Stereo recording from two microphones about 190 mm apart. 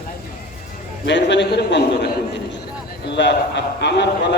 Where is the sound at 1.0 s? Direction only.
65° left (ahead or behind).